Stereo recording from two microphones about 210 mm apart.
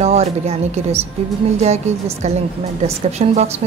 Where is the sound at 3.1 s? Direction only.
30° right (ahead or behind).